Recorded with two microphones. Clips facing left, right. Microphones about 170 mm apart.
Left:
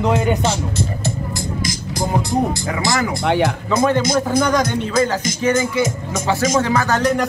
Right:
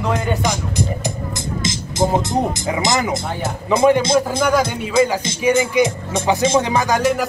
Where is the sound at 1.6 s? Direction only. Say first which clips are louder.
Right 6 dB; 25° right (ahead or behind).